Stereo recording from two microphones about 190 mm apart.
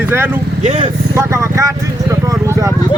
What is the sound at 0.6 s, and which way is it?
Speech, 35° right (ahead or behind).